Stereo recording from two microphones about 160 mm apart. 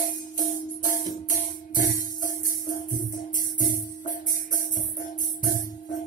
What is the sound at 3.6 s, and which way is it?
Music, 55° left (ahead or behind).